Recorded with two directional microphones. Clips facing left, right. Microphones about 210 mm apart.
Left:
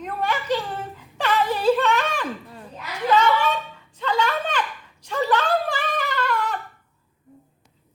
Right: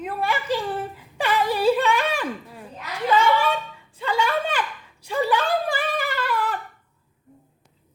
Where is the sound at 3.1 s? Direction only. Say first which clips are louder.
Even; 10° right (ahead or behind).